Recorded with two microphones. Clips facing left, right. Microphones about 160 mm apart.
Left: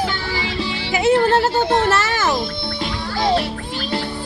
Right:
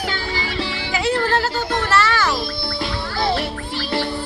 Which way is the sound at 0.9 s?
20° left (ahead or behind).